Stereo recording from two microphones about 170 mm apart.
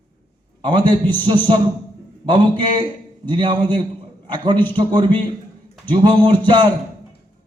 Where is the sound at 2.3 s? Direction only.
25° right (ahead or behind).